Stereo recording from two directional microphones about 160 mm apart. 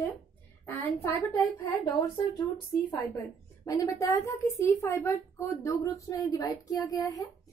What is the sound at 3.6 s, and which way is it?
Speech, 20° left (ahead or behind).